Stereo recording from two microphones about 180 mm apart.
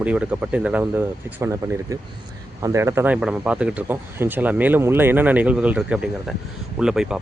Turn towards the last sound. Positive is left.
turn(degrees=-5)  # may be behind; listen again after turning